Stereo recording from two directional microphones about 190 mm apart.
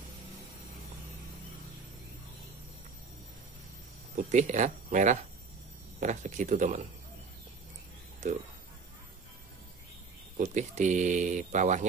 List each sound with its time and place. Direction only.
4.3 s speech: 40° right (ahead or behind)
8.2 s speech: 40° right (ahead or behind)
10.3 s speech: 40° right (ahead or behind)